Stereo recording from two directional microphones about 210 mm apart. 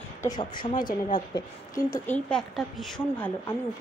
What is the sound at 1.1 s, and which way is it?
Speech, 20° left (ahead or behind).